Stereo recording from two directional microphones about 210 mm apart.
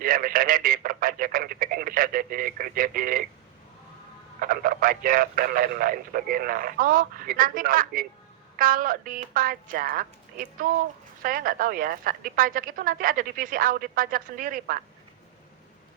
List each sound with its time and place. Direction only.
0.0 s radio: 40° right (ahead or behind)
4.4 s a woman's voice: 45° right (ahead or behind)